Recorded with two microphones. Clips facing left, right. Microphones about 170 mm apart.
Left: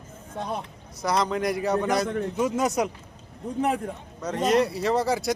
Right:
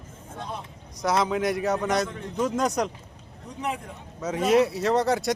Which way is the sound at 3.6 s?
50° left (ahead or behind).